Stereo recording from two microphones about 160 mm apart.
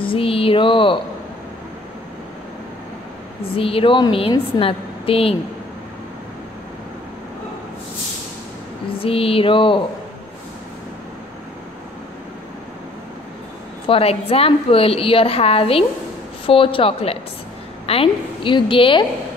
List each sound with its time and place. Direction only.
0.0 s a sound: 35° left (ahead or behind)
3.5 s a woman's voice: 35° left (ahead or behind)
8.9 s a woman's voice: 35° left (ahead or behind)
13.8 s a woman's voice: 35° left (ahead or behind)